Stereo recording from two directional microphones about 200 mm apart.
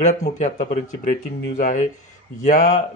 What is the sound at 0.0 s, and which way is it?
Speech, 35° left (ahead or behind).